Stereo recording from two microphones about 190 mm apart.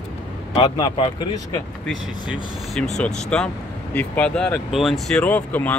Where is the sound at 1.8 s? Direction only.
5° left (ahead or behind).